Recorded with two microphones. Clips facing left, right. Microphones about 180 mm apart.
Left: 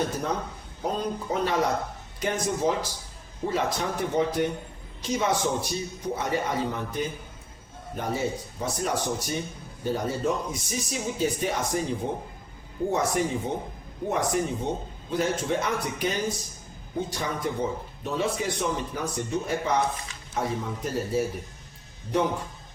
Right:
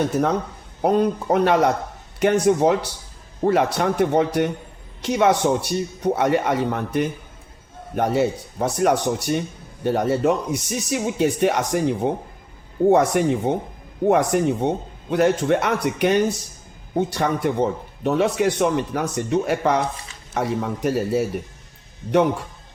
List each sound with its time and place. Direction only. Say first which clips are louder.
0.8 s a man's voice: right 10 dB; 65° right (ahead or behind)